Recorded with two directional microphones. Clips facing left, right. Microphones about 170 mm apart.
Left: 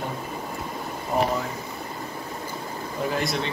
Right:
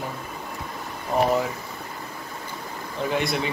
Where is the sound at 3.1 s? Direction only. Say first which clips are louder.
Right 3 dB; centre (ahead or behind).